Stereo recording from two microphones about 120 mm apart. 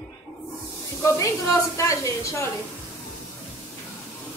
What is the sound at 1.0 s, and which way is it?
A woman's voice, 25° left (ahead or behind).